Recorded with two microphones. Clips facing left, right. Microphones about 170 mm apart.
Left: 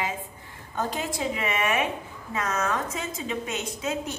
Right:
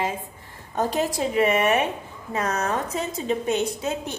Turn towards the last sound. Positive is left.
turn(degrees=-35)  # may be behind; listen again after turning